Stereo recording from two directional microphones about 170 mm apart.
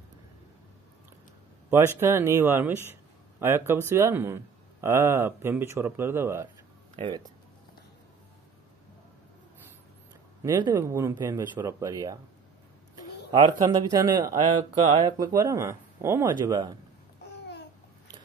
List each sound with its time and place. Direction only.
2.0 s speech: 15° right (ahead or behind)
7.0 s speech: 25° right (ahead or behind)
10.4 s speech: 20° right (ahead or behind)
13.3 s speech: 25° right (ahead or behind)